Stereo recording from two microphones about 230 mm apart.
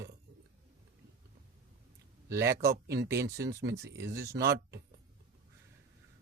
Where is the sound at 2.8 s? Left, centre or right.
Right.